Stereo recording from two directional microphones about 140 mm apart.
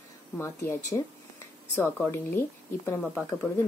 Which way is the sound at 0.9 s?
25° left (ahead or behind).